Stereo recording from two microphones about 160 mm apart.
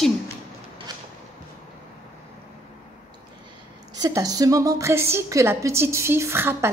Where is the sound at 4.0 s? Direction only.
20° right (ahead or behind).